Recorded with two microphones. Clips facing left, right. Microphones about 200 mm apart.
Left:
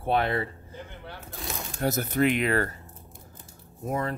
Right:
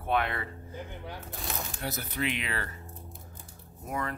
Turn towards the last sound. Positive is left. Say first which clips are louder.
# left 5 dB
turn(degrees=30)  # may be behind; listen again after turning